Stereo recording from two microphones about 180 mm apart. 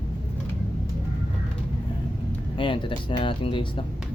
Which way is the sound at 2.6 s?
30° left (ahead or behind).